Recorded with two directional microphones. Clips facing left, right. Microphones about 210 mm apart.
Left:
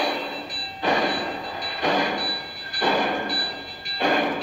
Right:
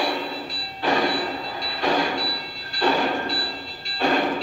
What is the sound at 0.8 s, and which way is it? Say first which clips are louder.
Train: right 1 dB; 20° left (ahead or behind).